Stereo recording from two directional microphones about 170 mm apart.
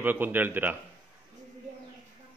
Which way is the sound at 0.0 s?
10° right (ahead or behind).